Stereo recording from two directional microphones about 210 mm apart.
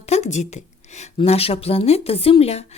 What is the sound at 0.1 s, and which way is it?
Speech, 35° left (ahead or behind).